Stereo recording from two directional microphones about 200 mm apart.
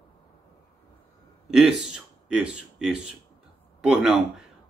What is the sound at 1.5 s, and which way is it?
A man's voice, 5° right (ahead or behind).